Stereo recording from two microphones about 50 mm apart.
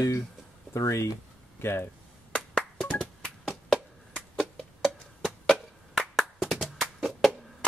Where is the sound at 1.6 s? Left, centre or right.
Left.